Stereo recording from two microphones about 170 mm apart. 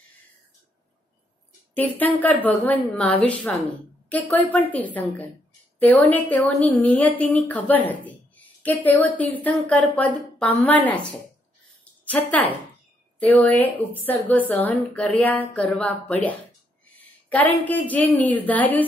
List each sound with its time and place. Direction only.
2.1 s a woman's voice: 10° left (ahead or behind)
11.8 s a sound: 10° left (ahead or behind)
13.2 s a woman's voice: 10° left (ahead or behind)
17.6 s a woman's voice: 10° left (ahead or behind)